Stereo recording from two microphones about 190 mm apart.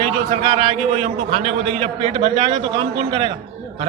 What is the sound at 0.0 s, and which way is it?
A man's voice, 30° right (ahead or behind).